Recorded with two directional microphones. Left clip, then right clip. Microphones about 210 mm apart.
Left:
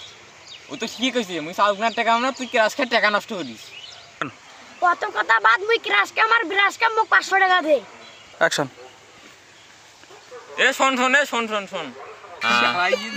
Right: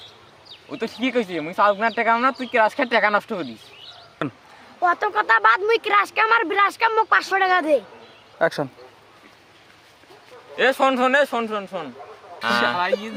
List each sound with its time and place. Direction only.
0.7 s speech: 25° right (ahead or behind)
4.2 s speech: 5° right (ahead or behind)
4.8 s speech: 25° right (ahead or behind)
8.4 s speech: centre (ahead or behind)
10.5 s speech: 35° right (ahead or behind)